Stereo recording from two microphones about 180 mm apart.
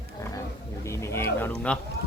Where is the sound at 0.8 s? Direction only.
15° left (ahead or behind).